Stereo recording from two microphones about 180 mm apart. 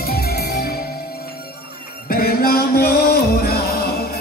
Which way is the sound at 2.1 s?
55° left (ahead or behind).